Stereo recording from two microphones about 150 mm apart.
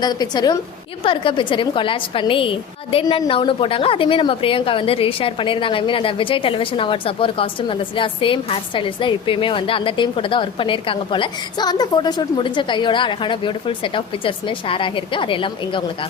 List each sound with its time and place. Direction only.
0.0 s a woman's voice: 25° left (ahead or behind)